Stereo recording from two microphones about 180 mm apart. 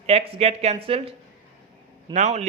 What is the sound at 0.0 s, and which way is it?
Speech, 35° right (ahead or behind).